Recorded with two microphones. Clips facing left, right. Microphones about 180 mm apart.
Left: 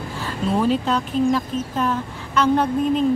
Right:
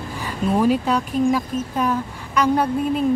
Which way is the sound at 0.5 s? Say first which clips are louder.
Right 2 dB; 10° right (ahead or behind).